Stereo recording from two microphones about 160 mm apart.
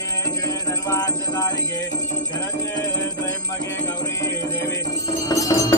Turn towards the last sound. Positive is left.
turn(degrees=20)  # may be behind; listen again after turning